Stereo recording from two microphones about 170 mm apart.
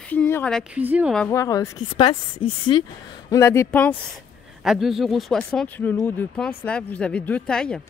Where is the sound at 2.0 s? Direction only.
30° left (ahead or behind).